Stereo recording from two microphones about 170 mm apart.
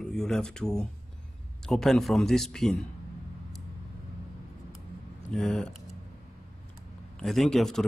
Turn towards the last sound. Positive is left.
turn(degrees=5)  # may be behind; listen again after turning